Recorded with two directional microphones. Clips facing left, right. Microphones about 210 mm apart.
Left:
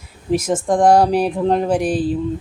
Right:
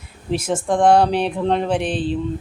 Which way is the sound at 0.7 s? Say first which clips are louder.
Left 1 dB; 40° left (ahead or behind).